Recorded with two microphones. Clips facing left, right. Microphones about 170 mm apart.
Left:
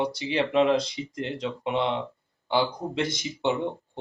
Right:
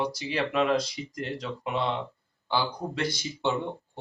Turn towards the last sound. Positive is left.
turn(degrees=20)  # may be behind; listen again after turning